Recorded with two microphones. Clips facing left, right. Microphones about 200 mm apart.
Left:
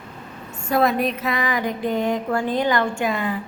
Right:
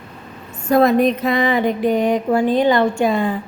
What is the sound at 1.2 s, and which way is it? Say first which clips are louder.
A woman's voice: right 7 dB; 30° right (ahead or behind).